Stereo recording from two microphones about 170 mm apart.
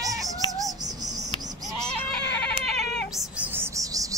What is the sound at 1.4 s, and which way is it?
Bleat, 20° right (ahead or behind).